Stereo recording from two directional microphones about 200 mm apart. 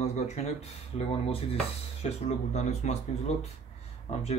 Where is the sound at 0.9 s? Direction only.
30° left (ahead or behind).